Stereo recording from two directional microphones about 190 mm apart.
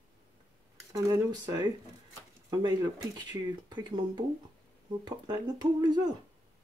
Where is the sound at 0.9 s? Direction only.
20° right (ahead or behind).